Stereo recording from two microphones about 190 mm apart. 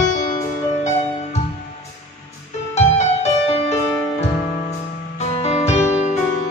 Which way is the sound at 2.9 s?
35° left (ahead or behind).